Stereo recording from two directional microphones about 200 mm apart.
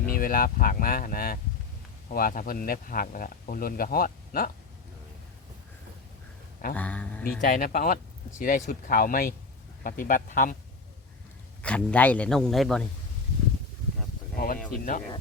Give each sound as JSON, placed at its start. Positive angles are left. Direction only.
{"t": 0.0, "sound": "speech", "side_deg": 45}
{"t": 6.7, "sound": "speech", "side_deg": 5}
{"t": 7.4, "sound": "speech", "side_deg": 45}
{"t": 11.6, "sound": "a man's voice", "side_deg": 5}
{"t": 14.3, "sound": "a sound", "side_deg": 45}